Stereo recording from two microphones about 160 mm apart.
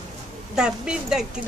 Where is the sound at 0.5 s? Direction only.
5° right (ahead or behind).